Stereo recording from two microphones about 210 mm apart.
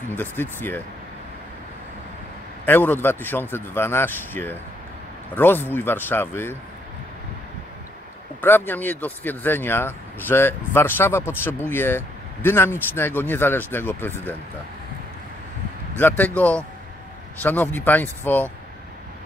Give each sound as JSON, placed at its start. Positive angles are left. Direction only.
{"t": 0.2, "sound": "speech", "side_deg": 10}
{"t": 2.6, "sound": "speech", "side_deg": 10}
{"t": 8.4, "sound": "speech", "side_deg": 10}
{"t": 16.0, "sound": "speech", "side_deg": 10}